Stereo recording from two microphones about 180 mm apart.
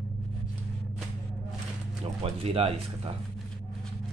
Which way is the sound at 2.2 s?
35° right (ahead or behind).